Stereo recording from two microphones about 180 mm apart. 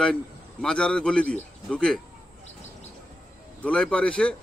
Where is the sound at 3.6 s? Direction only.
5° left (ahead or behind).